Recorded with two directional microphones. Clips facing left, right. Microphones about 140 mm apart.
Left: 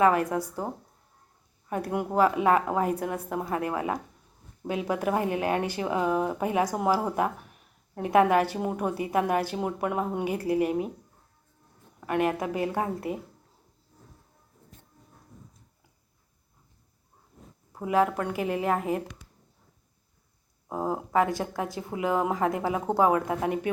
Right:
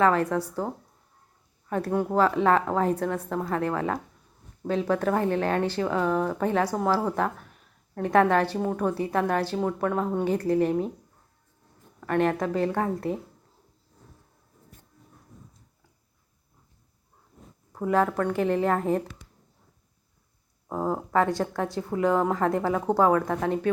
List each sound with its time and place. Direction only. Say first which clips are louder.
0.0 s a woman's voice: even; 10° left (ahead or behind)
1.7 s a woman's voice: right 2 dB; 15° left (ahead or behind)
11.9 s a woman's voice: right 2 dB; 10° left (ahead or behind)
17.7 s a woman's voice: right 1 dB; 10° left (ahead or behind)
20.7 s a woman's voice: right 2 dB; 10° left (ahead or behind)